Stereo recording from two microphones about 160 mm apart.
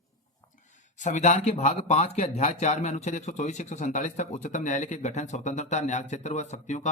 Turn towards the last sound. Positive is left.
turn(degrees=45)  # may be behind; listen again after turning